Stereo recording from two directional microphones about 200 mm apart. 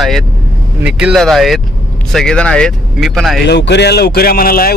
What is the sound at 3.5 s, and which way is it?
Speech, 60° left (ahead or behind).